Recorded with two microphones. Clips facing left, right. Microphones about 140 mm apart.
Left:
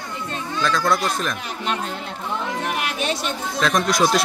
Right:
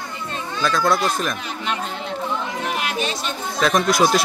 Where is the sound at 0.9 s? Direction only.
Centre (ahead or behind).